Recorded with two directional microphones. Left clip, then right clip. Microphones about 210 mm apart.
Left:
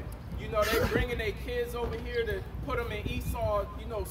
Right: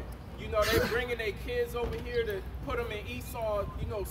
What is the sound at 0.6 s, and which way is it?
Speech, 30° right (ahead or behind).